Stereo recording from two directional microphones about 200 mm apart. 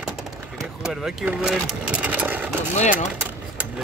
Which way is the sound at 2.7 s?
35° left (ahead or behind).